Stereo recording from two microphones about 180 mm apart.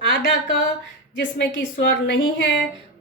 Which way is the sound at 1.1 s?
75° left (ahead or behind).